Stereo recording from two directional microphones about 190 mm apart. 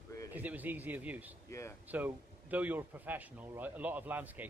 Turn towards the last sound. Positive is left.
turn(degrees=-10)  # may be behind; listen again after turning